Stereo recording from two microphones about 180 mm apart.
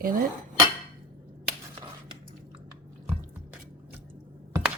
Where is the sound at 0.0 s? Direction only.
50° right (ahead or behind).